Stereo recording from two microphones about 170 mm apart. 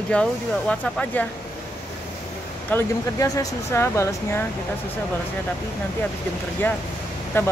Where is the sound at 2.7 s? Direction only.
20° left (ahead or behind).